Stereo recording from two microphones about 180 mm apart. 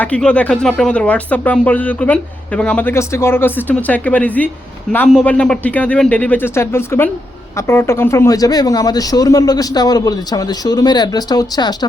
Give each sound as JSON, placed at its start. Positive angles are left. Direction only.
{"t": 0.0, "sound": "speech", "side_deg": 5}